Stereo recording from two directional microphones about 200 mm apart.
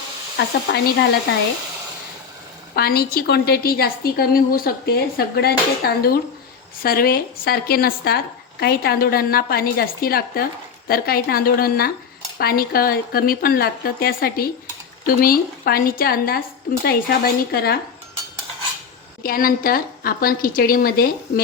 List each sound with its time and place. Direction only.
0.3 s speech: 60° left (ahead or behind)
2.7 s a woman's voice: 50° left (ahead or behind)
19.2 s a woman's voice: 45° left (ahead or behind)